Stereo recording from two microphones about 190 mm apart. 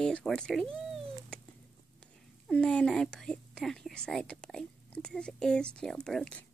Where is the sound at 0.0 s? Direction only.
5° left (ahead or behind).